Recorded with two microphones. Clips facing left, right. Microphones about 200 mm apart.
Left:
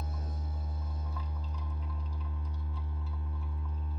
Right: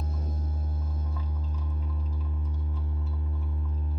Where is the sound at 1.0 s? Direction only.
5° right (ahead or behind).